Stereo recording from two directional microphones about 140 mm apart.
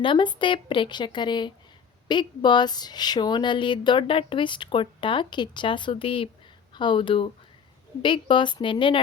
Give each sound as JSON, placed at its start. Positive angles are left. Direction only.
{"t": 0.0, "sound": "speech", "side_deg": 35}